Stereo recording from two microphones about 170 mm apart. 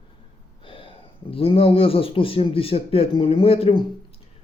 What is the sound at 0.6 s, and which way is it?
A man's voice, 30° left (ahead or behind).